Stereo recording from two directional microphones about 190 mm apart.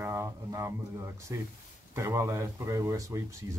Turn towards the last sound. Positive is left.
turn(degrees=-15)  # may be behind; listen again after turning